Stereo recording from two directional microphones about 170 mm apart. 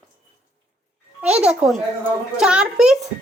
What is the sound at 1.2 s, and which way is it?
A woman's voice, 5° right (ahead or behind).